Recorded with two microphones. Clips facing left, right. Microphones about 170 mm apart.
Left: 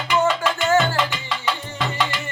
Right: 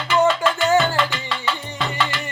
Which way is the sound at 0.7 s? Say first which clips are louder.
Even; 15° right (ahead or behind).